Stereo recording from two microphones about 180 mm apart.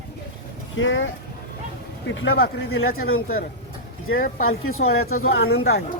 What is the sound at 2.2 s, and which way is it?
Speech, 65° left (ahead or behind).